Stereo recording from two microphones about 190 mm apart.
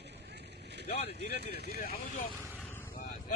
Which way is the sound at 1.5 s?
55° left (ahead or behind).